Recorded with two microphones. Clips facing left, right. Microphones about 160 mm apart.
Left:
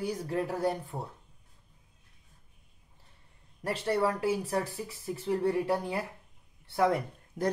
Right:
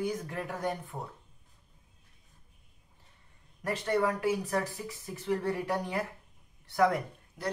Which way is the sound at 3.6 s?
30° left (ahead or behind).